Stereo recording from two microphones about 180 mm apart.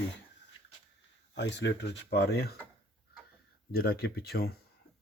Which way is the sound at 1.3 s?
80° left.